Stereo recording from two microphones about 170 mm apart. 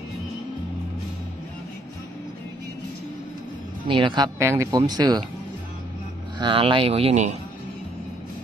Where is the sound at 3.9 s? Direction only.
30° right (ahead or behind).